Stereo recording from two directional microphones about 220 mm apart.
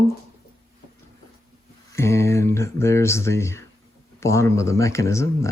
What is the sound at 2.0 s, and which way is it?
Speech, 10° left (ahead or behind).